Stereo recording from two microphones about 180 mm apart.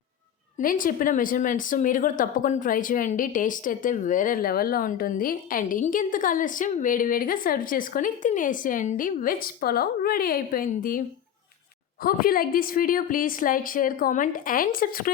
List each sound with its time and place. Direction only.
0.6 s a woman's voice: 50° left (ahead or behind)
12.0 s a woman's voice: 55° left (ahead or behind)